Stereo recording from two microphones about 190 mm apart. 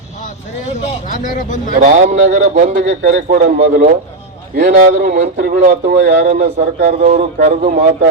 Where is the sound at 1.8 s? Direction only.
40° right (ahead or behind).